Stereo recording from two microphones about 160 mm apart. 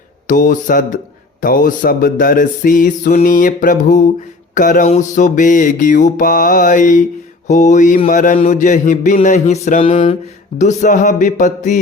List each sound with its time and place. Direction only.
0.3 s music: 55° left (ahead or behind)
4.9 s mantra: 50° left (ahead or behind)
8.0 s music: 55° left (ahead or behind)
8.4 s mantra: 50° left (ahead or behind)
9.8 s a sound: 40° left (ahead or behind)
10.6 s mantra: 50° left (ahead or behind)